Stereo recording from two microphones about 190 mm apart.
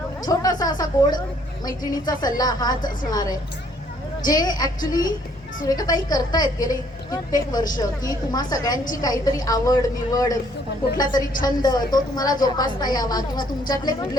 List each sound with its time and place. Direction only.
0.3 s a woman's voice: 20° left (ahead or behind)